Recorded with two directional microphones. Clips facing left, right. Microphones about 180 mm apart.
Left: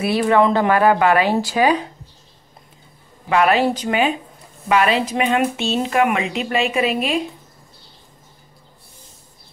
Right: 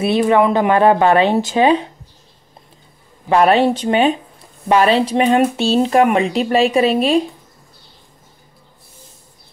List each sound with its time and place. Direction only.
0.0 s speech: 20° right (ahead or behind)
3.3 s speech: 30° right (ahead or behind)